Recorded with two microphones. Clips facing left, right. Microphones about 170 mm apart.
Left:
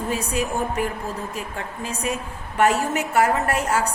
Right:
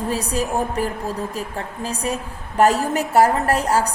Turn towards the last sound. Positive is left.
turn(degrees=-35)  # may be behind; listen again after turning